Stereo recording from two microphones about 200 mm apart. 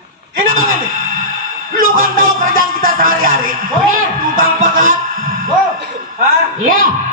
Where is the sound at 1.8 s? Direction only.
45° right (ahead or behind).